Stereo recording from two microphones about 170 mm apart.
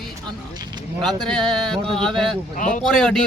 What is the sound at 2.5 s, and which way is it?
Speech, 45° left (ahead or behind).